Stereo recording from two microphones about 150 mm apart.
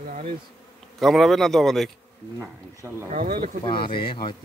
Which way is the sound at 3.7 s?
35° left (ahead or behind).